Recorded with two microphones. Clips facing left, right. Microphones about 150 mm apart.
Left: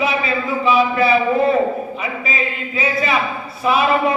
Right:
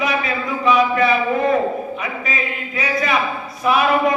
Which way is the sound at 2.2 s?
30° left (ahead or behind).